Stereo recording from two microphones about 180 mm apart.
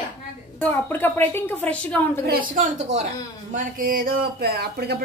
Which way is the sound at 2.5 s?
45° right (ahead or behind).